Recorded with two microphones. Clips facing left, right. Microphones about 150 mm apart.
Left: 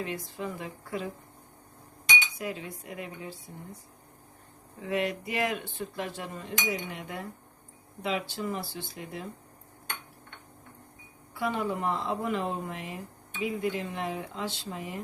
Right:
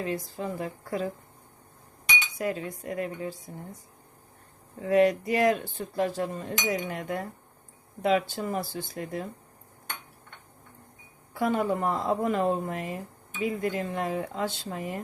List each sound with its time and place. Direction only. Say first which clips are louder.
0.0 s dishes: right 3 dB; 35° right (ahead or behind)
2.4 s speech: right 5 dB; 45° right (ahead or behind)
4.8 s dishes: right 9 dB; 40° right (ahead or behind)
8.0 s speech: right 6 dB; 50° right (ahead or behind)
11.3 s speech: right 4 dB; 45° right (ahead or behind)